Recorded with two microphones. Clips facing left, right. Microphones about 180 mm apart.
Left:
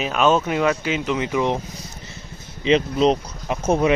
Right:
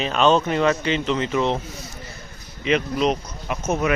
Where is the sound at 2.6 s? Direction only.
30° left (ahead or behind).